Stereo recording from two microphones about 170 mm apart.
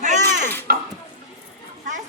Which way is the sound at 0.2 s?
15° left (ahead or behind).